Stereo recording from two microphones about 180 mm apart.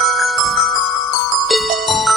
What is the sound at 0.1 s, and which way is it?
Marimba, centre (ahead or behind).